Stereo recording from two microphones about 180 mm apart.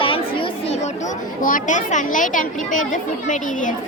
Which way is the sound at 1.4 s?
50° left (ahead or behind).